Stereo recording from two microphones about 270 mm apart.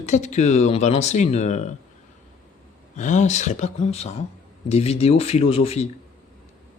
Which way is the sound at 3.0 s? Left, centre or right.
Left.